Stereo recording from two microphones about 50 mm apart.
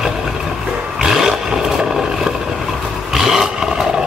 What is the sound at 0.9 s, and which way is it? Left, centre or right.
Roar, centre.